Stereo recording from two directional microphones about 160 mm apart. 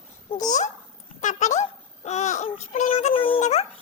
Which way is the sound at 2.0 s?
45° left (ahead or behind).